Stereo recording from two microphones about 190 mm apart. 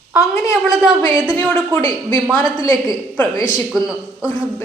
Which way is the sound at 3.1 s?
10° left (ahead or behind).